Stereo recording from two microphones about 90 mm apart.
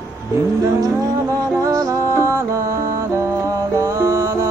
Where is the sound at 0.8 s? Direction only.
35° right (ahead or behind).